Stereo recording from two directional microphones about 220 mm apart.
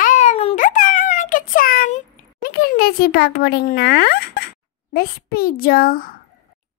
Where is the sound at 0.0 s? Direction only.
30° left (ahead or behind).